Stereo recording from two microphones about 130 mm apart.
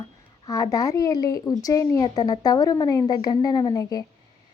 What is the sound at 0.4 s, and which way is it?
Speech, 25° left (ahead or behind).